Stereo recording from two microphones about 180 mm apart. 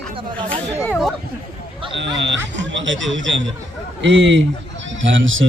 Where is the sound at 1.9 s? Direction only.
80° right.